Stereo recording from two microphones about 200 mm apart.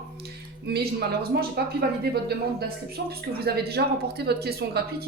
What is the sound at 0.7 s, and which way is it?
Speech, 50° right (ahead or behind).